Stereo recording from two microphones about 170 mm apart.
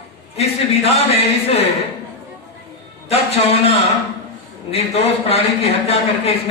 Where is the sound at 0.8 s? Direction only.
35° left (ahead or behind).